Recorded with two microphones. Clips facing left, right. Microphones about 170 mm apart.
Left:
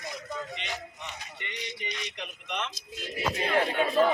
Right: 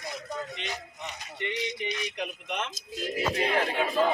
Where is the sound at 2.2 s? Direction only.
45° right (ahead or behind).